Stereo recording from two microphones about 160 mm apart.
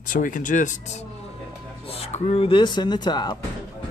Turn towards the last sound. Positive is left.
turn(degrees=25)  # may be behind; listen again after turning